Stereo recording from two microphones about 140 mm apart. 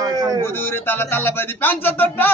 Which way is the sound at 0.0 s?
30° right (ahead or behind).